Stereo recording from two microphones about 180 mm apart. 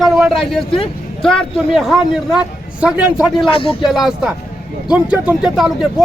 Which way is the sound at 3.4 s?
30° left (ahead or behind).